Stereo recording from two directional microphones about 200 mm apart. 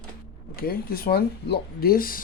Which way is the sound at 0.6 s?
50° left (ahead or behind).